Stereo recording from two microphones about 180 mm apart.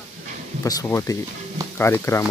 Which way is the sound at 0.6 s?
20° left (ahead or behind).